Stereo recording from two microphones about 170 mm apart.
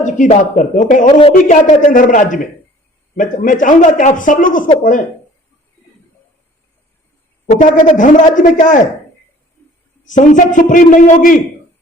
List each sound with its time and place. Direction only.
0.0 s speech: 45° left (ahead or behind)
7.6 s speech: 50° left (ahead or behind)
10.1 s speech: 50° left (ahead or behind)